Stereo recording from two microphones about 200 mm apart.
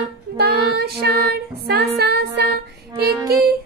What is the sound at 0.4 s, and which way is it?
Music, 55° right (ahead or behind).